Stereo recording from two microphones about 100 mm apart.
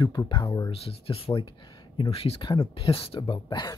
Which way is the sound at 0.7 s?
70° left (ahead or behind).